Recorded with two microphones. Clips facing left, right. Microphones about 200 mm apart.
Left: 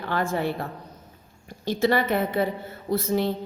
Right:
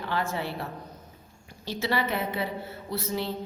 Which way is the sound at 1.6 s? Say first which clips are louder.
Left 6 dB; 50° left (ahead or behind).